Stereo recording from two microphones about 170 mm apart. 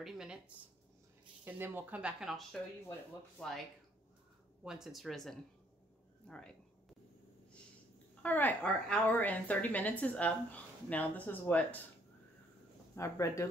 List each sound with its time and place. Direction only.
0.0 s speech: 5° right (ahead or behind)
4.6 s speech: centre (ahead or behind)
8.2 s a woman's voice: 10° left (ahead or behind)
12.9 s a woman's voice: 20° left (ahead or behind)